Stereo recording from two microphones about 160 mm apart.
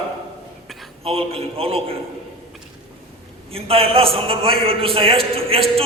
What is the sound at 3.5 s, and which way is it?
A man's voice, 35° right (ahead or behind).